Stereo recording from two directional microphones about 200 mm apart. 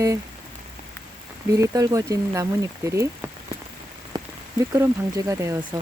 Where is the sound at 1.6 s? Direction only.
15° right (ahead or behind).